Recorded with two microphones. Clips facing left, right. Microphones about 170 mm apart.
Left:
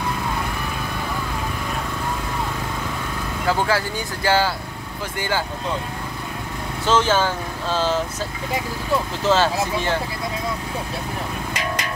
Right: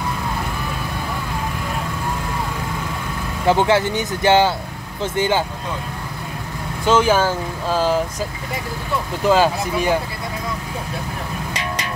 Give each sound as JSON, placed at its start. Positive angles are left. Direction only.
{"t": 3.4, "sound": "speech", "side_deg": -20}
{"t": 6.9, "sound": "speech", "side_deg": -10}
{"t": 9.2, "sound": "speech", "side_deg": -15}